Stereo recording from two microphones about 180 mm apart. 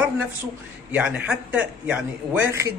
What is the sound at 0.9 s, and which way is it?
Speech, 10° right (ahead or behind).